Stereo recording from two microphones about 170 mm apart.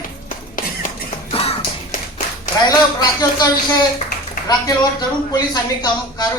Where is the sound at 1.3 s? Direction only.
35° left (ahead or behind).